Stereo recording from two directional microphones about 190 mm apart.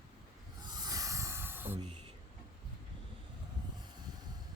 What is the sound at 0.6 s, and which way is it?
Rub, 20° right (ahead or behind).